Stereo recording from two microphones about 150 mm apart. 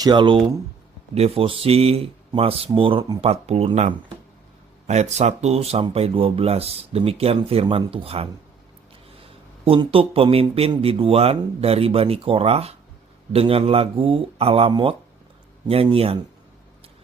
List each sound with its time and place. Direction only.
0.0 s speech: 30° right (ahead or behind)
9.6 s speech: 40° right (ahead or behind)